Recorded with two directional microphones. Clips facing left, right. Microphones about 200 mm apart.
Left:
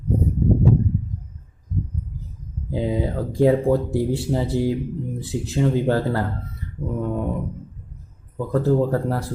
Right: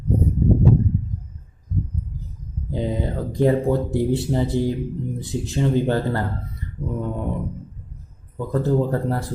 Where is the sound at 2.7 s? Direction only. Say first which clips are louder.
Left 2 dB; 5° left (ahead or behind).